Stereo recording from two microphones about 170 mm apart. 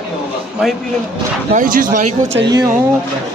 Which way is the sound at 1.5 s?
50° right (ahead or behind).